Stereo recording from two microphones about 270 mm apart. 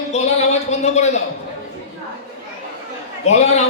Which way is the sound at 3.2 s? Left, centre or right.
Left.